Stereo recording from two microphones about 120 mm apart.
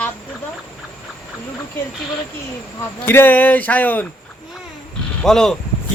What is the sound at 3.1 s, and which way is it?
Speech, 15° left (ahead or behind).